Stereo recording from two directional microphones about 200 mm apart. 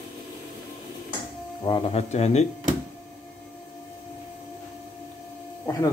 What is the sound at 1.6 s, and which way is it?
Speech, 25° left (ahead or behind).